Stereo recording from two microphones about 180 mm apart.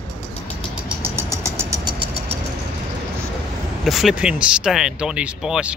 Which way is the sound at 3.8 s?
Centre (ahead or behind).